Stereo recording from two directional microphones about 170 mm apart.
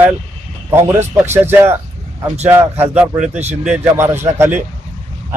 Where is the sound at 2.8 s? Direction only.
5° right (ahead or behind).